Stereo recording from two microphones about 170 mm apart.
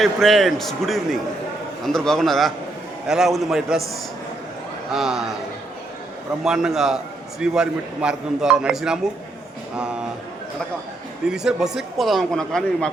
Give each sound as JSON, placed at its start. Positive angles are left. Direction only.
{"t": 0.0, "sound": "a man's voice", "side_deg": 0}
{"t": 4.9, "sound": "a man's voice", "side_deg": -5}
{"t": 6.4, "sound": "a man's voice", "side_deg": -5}
{"t": 11.3, "sound": "a man's voice", "side_deg": -5}